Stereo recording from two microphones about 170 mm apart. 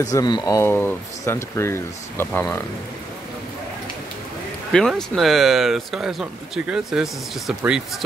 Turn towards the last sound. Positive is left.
turn(degrees=-5)  # may be behind; listen again after turning